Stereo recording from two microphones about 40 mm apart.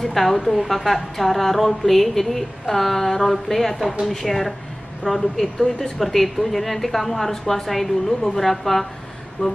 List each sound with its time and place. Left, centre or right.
0.0 s a woman's voice: centre
9.4 s speech: left